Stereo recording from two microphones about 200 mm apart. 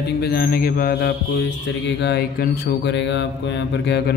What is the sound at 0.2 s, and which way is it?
Speech, 50° left (ahead or behind).